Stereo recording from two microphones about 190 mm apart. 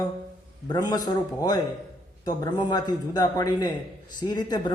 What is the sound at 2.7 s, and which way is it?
A man's voice, 20° left (ahead or behind).